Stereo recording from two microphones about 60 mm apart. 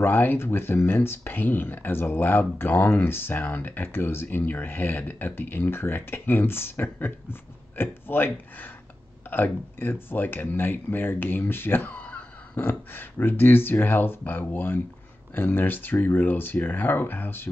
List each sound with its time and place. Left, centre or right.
0.0 s speech: left